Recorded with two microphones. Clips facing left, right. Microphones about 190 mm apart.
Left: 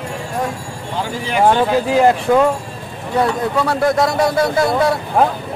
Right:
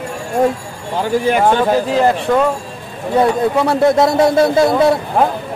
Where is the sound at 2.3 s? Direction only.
5° left (ahead or behind).